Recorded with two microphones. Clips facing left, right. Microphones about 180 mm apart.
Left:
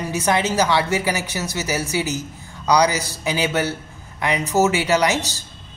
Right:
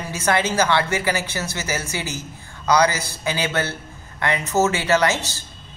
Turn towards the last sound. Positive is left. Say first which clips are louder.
# left 1 dB
turn(degrees=15)  # may be behind; listen again after turning